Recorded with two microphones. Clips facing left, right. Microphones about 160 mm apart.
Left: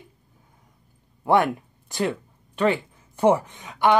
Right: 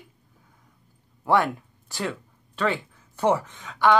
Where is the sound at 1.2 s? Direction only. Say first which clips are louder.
Left 2 dB; 20° left (ahead or behind).